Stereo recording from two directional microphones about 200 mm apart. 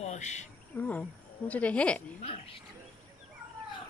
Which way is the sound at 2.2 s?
30° left (ahead or behind).